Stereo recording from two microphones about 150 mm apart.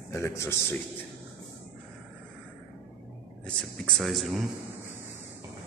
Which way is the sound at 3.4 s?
5° left (ahead or behind).